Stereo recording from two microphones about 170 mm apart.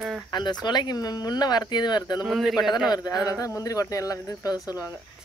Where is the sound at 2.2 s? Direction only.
Centre (ahead or behind).